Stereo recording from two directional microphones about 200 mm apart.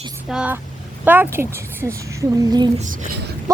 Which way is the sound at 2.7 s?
40° right (ahead or behind).